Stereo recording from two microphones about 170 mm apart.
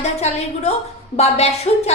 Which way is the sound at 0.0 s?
40° left (ahead or behind).